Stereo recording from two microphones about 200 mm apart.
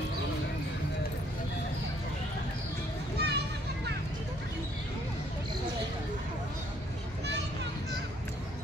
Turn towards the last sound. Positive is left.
turn(degrees=-60)  # may be behind; listen again after turning